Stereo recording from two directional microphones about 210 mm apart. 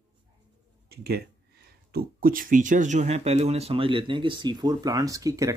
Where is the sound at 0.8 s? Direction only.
50° right (ahead or behind).